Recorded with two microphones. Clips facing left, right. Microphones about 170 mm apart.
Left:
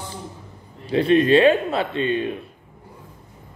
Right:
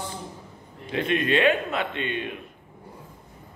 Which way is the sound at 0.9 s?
35° left (ahead or behind).